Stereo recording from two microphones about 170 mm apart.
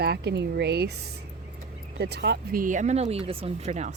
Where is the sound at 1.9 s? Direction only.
75° right (ahead or behind); by 3.9 s 40° right (ahead or behind).